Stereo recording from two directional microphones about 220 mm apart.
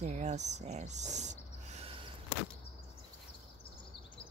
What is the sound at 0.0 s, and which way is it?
Speech, 30° right (ahead or behind).